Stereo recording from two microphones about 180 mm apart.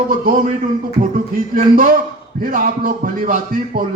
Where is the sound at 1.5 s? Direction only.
50° right (ahead or behind).